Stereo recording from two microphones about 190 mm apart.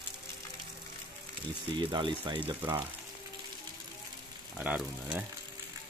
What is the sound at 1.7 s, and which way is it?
Speech, 25° right (ahead or behind).